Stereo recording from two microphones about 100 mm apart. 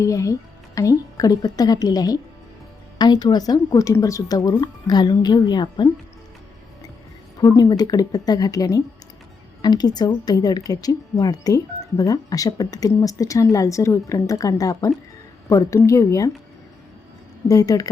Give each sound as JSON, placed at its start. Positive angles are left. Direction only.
{"t": 0.0, "sound": "speech", "side_deg": 35}
{"t": 7.3, "sound": "speech", "side_deg": 40}
{"t": 17.5, "sound": "speech", "side_deg": 35}